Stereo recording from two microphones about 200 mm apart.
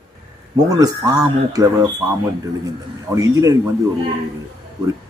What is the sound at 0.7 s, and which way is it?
A man's voice, 20° right (ahead or behind).